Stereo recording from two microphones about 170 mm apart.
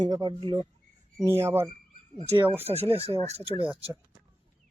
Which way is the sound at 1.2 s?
15° right (ahead or behind).